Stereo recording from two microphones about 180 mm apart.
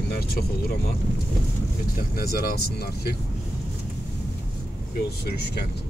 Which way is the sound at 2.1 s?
55° left (ahead or behind).